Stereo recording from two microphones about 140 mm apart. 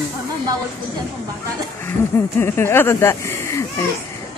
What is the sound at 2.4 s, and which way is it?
Speech, 15° left (ahead or behind).